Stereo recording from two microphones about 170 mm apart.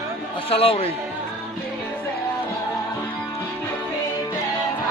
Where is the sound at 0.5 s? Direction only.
35° left (ahead or behind).